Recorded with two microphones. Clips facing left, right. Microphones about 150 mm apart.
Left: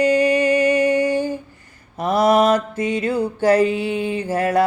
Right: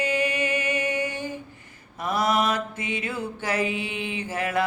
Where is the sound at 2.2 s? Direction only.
35° left (ahead or behind).